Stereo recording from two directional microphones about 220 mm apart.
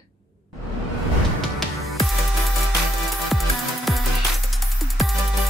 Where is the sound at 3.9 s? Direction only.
Centre (ahead or behind).